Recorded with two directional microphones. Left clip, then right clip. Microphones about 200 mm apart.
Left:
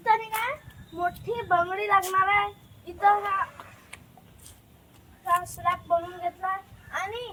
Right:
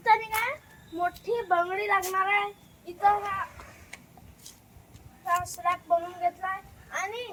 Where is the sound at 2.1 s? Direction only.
10° left (ahead or behind).